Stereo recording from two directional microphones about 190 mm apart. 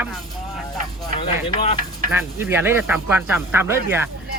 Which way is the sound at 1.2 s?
30° left (ahead or behind).